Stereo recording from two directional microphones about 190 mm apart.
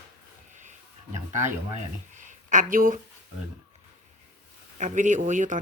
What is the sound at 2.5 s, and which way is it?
Speech, 45° right (ahead or behind).